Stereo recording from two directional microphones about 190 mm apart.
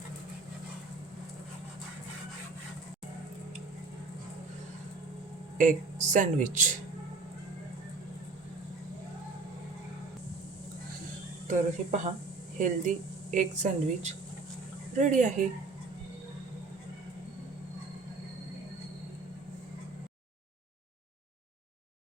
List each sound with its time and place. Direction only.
5.5 s speech: 40° right (ahead or behind)
11.4 s speech: 40° right (ahead or behind)